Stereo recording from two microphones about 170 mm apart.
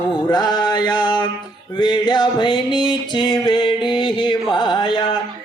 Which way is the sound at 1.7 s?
30° left (ahead or behind).